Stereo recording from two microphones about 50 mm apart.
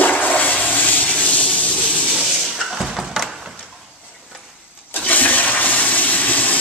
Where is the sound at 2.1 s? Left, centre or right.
Centre.